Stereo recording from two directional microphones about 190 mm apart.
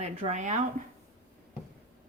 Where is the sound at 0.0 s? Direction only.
35° right (ahead or behind).